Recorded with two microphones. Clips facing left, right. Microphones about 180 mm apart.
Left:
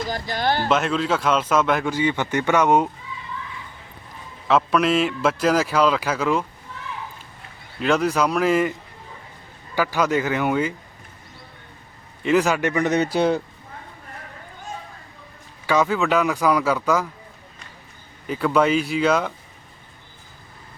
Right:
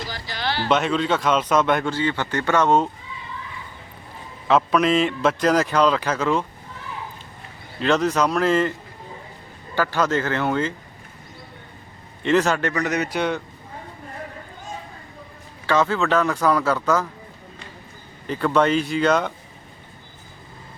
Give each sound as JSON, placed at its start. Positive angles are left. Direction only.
{"t": 0.1, "sound": "speech", "side_deg": 50}
{"t": 0.7, "sound": "a man's voice", "side_deg": 0}
{"t": 1.9, "sound": "speech", "side_deg": 15}
{"t": 4.4, "sound": "a man's voice", "side_deg": 0}
{"t": 7.8, "sound": "speech", "side_deg": 5}
{"t": 9.7, "sound": "speech", "side_deg": 10}
{"t": 12.2, "sound": "speech", "side_deg": 10}
{"t": 12.7, "sound": "a man's voice", "side_deg": 25}
{"t": 15.6, "sound": "speech", "side_deg": 10}
{"t": 18.3, "sound": "speech", "side_deg": 10}